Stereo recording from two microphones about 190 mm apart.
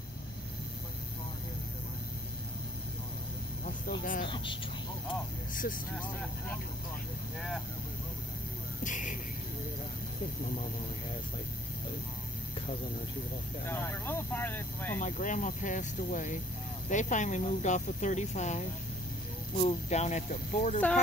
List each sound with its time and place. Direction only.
4.0 s speech: 45° left (ahead or behind)
5.5 s speech: 45° left (ahead or behind)
7.3 s speech: centre (ahead or behind)
8.8 s speech: 40° left (ahead or behind)
13.7 s speech: 10° left (ahead or behind)
15.0 s speech: 45° left (ahead or behind)